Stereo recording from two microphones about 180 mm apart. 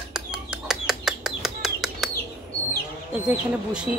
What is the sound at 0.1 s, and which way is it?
Bird, 5° right (ahead or behind).